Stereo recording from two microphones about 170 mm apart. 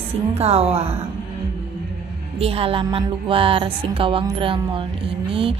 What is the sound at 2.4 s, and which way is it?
A woman's voice, 35° right (ahead or behind).